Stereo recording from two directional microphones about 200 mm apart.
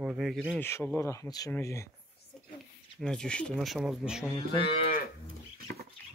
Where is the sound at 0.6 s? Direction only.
10° left (ahead or behind).